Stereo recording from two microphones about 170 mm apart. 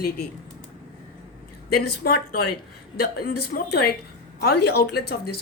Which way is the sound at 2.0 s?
65° left (ahead or behind).